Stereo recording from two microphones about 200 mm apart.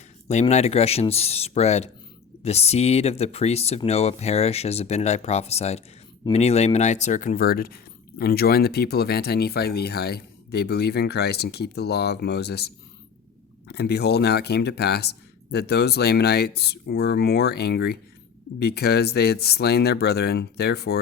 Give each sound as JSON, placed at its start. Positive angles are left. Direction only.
{"t": 0.3, "sound": "speech", "side_deg": 35}